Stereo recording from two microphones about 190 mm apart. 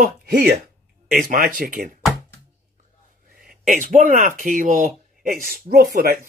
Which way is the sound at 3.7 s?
45° right (ahead or behind).